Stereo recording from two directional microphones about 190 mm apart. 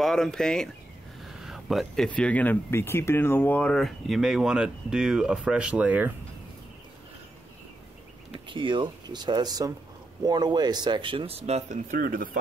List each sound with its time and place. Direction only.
0.0 s speech: centre (ahead or behind)
8.5 s speech: 25° right (ahead or behind); by 12.3 s 45° right (ahead or behind)